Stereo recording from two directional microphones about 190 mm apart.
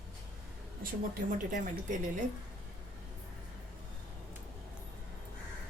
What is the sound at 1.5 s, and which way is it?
Speech, 40° right (ahead or behind).